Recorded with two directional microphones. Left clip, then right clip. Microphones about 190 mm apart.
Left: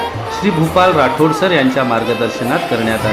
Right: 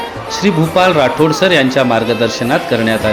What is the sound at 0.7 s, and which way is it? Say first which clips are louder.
Speech: even; 35° right (ahead or behind).